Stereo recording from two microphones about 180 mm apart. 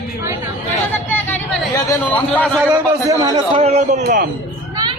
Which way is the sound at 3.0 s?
20° right (ahead or behind).